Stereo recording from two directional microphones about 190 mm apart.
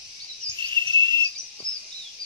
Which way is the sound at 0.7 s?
25° right (ahead or behind).